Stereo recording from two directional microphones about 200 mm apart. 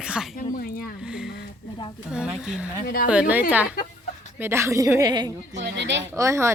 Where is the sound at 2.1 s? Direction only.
5° right (ahead or behind); by 5.3 s 20° right (ahead or behind).